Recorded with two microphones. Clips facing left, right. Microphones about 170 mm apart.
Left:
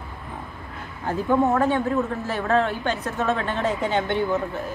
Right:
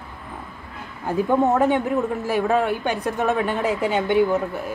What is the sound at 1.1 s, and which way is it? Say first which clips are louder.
A woman's voice: right 2 dB; 15° right (ahead or behind).